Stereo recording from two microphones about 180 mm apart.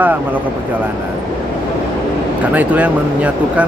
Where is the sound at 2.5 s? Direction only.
10° right (ahead or behind).